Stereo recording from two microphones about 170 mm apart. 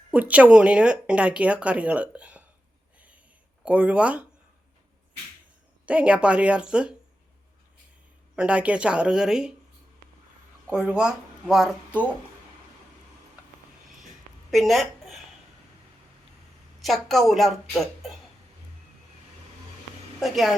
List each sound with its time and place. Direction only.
0.1 s speech: 10° right (ahead or behind)
3.6 s speech: 10° right (ahead or behind)
5.8 s speech: 5° right (ahead or behind)
8.4 s a woman's voice: 5° right (ahead or behind)
10.7 s speech: 5° right (ahead or behind)
14.5 s a woman's voice: centre (ahead or behind)
16.8 s a woman's voice: centre (ahead or behind)
20.1 s a woman's voice: centre (ahead or behind)